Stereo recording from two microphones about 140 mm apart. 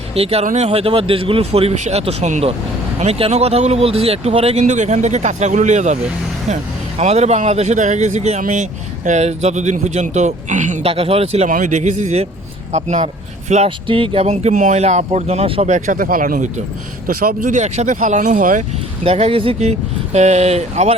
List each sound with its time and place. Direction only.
0.1 s speech: 45° right (ahead or behind)
7.0 s speech: 50° right (ahead or behind)
11.4 s speech: 65° right (ahead or behind)
13.7 s speech: 40° right (ahead or behind)
15.6 s speech: 65° right (ahead or behind)
17.1 s speech: 90° right; by 18.6 s 70° right (ahead or behind)
19.0 s speech: 45° right (ahead or behind)